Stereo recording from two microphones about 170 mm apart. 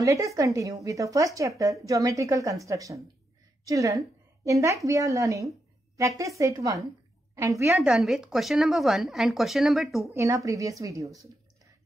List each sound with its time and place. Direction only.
0.0 s a woman's voice: 20° right (ahead or behind)
7.7 s speech: centre (ahead or behind)
10.1 s a woman's voice: 20° right (ahead or behind)